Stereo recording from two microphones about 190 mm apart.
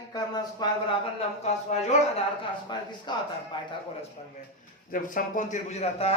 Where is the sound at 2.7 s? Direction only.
25° left (ahead or behind).